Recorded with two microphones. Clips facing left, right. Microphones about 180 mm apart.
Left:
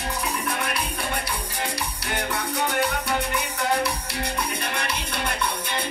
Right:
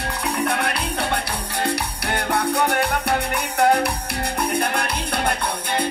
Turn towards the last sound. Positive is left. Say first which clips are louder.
# right 4 dB
turn(degrees=-60)  # may be behind; listen again after turning